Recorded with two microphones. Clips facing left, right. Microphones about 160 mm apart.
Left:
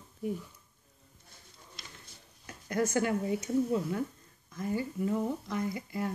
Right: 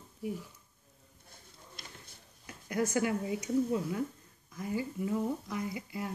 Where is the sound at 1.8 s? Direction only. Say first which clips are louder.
Right 1 dB; 55° right (ahead or behind).